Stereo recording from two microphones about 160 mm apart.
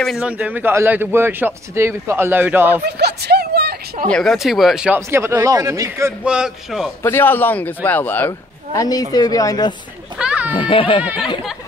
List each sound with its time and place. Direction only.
0.0 s a man's voice: 5° right (ahead or behind)
2.8 s a sound: 90° right
4.1 s a man's voice: centre (ahead or behind); by 6.1 s 20° right (ahead or behind)
6.2 s speech: 5° right (ahead or behind)
7.0 s speech: 15° left (ahead or behind)
10.1 s children playing: 5° right (ahead or behind)
10.5 s speech: 30° left (ahead or behind)